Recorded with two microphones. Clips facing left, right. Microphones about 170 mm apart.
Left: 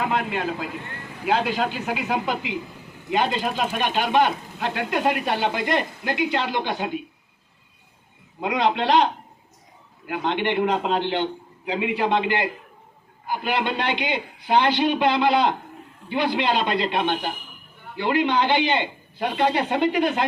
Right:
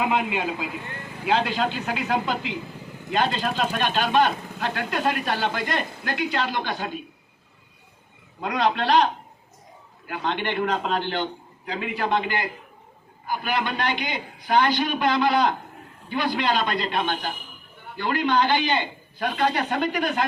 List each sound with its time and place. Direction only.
0.0 s speech: 10° right (ahead or behind)
1.2 s speech: 5° left (ahead or behind)
8.4 s a man's voice: 20° left (ahead or behind)
10.1 s a man's voice: 15° left (ahead or behind)